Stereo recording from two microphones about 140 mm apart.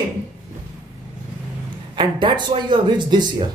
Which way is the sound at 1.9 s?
35° right (ahead or behind).